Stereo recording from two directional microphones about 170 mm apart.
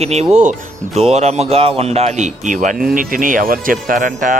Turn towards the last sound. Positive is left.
turn(degrees=-50)  # may be behind; listen again after turning